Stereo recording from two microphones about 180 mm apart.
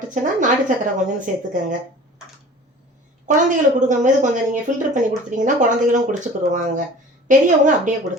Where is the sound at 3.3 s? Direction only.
45° right (ahead or behind).